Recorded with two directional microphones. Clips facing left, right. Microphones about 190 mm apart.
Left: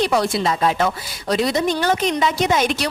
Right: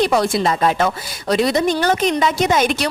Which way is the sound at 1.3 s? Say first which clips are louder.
Right 3 dB; 65° right (ahead or behind).